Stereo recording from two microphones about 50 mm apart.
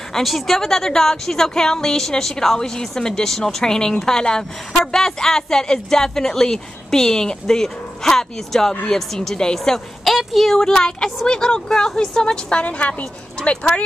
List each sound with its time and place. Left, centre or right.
0.1 s a woman's voice: centre
10.0 s a woman's voice: centre; by 13.8 s left